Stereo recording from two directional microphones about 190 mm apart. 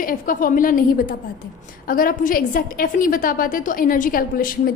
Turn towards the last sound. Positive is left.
turn(degrees=50)  # may be behind; listen again after turning